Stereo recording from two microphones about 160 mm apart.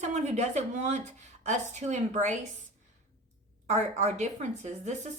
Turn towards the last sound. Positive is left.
turn(degrees=-45)  # may be behind; listen again after turning